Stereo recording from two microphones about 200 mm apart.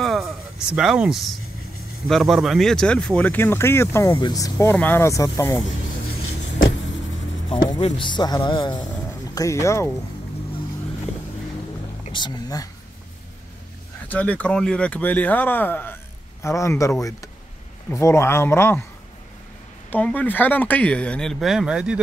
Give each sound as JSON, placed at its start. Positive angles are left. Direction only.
{"t": 0.0, "sound": "a sound", "side_deg": 0}
{"t": 0.7, "sound": "speech", "side_deg": -5}
{"t": 7.4, "sound": "a man's voice", "side_deg": 25}
{"t": 12.1, "sound": "a sound", "side_deg": 20}
{"t": 14.0, "sound": "speech", "side_deg": 10}
{"t": 19.9, "sound": "speech", "side_deg": 5}